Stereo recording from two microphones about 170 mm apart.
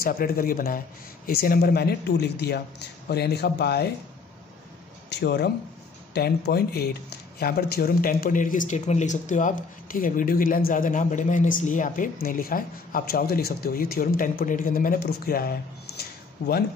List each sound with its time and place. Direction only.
0.0 s speech: 60° left (ahead or behind)
5.1 s speech: 75° left (ahead or behind)
16.0 s a sound: 65° left (ahead or behind)